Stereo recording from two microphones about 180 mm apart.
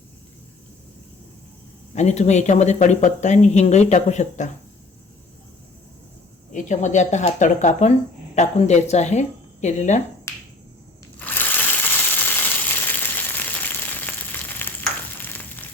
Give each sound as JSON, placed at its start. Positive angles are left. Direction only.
{"t": 2.0, "sound": "speech", "side_deg": 40}
{"t": 6.5, "sound": "speech", "side_deg": 40}
{"t": 11.2, "sound": "crushing", "side_deg": 10}
{"t": 12.4, "sound": "a sound", "side_deg": 10}